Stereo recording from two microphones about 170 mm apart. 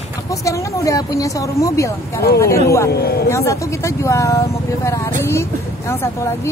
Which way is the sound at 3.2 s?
15° left (ahead or behind).